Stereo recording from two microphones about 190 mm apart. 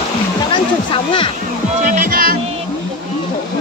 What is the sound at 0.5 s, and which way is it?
Music, 25° left (ahead or behind).